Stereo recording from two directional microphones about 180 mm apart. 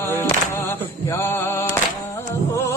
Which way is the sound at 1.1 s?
15° left (ahead or behind).